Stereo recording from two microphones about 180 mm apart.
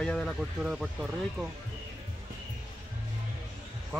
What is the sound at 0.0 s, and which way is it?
Speech, 5° left (ahead or behind).